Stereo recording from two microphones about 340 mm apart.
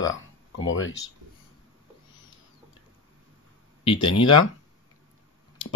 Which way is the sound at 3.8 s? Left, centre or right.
Centre.